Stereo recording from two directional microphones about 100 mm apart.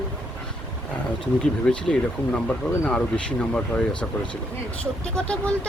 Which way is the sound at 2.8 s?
10° left (ahead or behind).